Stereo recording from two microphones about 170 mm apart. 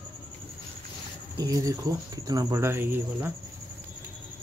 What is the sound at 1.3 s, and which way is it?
Speech, 20° right (ahead or behind).